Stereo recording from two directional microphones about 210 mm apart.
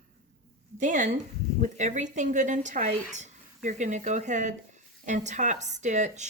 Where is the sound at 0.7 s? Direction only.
35° right (ahead or behind).